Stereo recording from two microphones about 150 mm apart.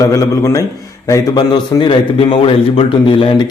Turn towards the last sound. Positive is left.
turn(degrees=30)  # may be behind; listen again after turning